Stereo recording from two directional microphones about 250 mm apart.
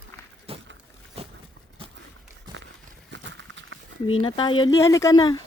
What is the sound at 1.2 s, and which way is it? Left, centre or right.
Vehicle, right.